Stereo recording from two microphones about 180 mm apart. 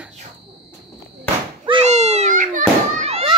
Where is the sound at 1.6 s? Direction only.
30° right (ahead or behind).